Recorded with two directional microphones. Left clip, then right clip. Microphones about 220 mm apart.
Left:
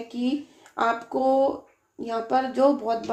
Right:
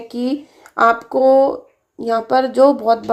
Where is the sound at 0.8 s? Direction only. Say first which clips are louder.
Right 11 dB; 40° right (ahead or behind).